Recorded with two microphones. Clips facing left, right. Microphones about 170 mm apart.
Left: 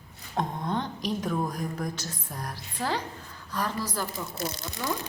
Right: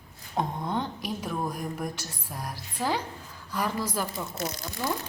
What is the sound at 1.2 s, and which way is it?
A woman's voice, 5° right (ahead or behind).